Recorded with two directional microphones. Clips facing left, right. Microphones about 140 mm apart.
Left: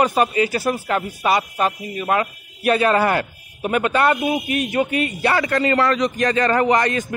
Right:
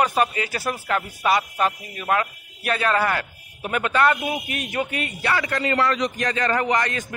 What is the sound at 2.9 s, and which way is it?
Speech, 25° left (ahead or behind).